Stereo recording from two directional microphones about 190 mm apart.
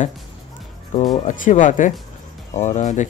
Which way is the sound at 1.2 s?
40° left (ahead or behind).